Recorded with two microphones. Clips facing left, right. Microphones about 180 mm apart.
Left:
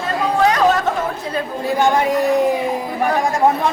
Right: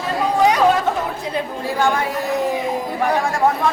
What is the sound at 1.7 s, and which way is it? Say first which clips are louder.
Speech: left 4 dB; 20° left (ahead or behind).